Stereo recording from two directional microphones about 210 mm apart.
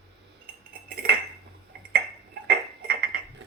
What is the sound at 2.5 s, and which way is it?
Clock, 45° right (ahead or behind).